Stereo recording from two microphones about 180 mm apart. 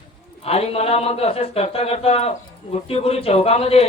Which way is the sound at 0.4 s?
35° left (ahead or behind).